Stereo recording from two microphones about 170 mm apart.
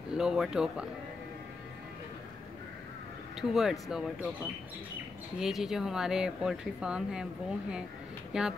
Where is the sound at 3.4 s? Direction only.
Centre (ahead or behind).